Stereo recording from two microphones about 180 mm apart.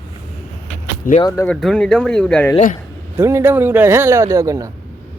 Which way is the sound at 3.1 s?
15° right (ahead or behind).